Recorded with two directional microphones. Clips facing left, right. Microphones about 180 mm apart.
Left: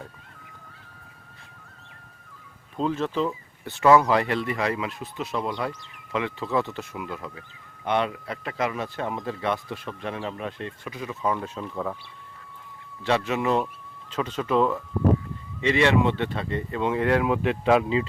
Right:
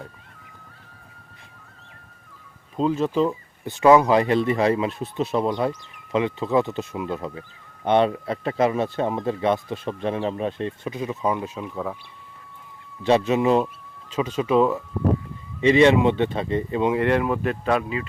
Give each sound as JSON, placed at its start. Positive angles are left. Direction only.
{"t": 2.7, "sound": "speech", "side_deg": -10}
{"t": 13.0, "sound": "speech", "side_deg": -20}
{"t": 16.9, "sound": "speech", "side_deg": 0}